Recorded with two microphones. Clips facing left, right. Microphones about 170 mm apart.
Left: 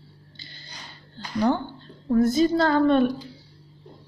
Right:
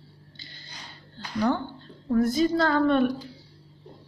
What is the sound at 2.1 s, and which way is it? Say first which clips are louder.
A woman's voice: left 3 dB; 25° left (ahead or behind).